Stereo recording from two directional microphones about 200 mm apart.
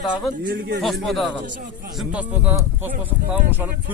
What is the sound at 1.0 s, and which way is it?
Speech, centre (ahead or behind).